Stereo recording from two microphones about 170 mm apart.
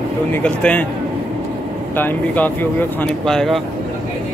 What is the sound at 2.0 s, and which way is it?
Speech, 10° left (ahead or behind).